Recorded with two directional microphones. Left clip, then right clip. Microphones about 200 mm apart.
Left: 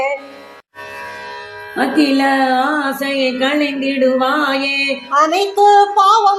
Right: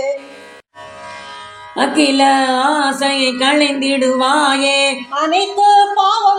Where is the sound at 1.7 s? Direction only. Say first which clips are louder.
Right 2 dB; 15° right (ahead or behind).